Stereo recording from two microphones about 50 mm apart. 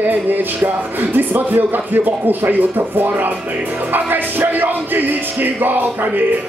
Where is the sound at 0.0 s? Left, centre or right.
Right.